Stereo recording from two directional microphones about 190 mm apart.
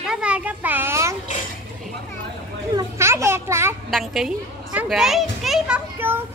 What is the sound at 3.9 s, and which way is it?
A child's voice, centre (ahead or behind).